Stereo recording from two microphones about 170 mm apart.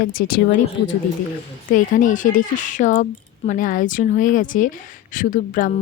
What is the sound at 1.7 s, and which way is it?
Speech, 50° left (ahead or behind).